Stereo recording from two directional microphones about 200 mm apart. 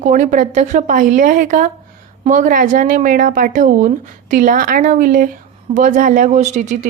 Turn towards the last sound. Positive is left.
turn(degrees=-35)  # may be behind; listen again after turning